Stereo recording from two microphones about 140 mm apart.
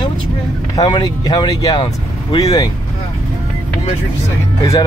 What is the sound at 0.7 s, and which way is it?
Speech, 30° left (ahead or behind).